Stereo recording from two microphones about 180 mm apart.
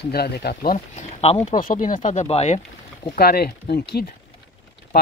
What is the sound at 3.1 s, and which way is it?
Speech, 60° left (ahead or behind).